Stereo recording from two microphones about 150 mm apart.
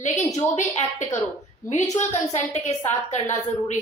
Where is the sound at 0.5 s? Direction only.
55° left (ahead or behind).